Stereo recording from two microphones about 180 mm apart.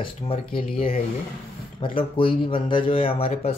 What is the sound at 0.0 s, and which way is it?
Speech, 30° left (ahead or behind).